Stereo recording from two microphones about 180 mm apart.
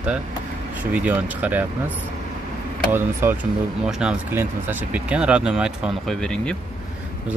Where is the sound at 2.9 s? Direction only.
15° right (ahead or behind).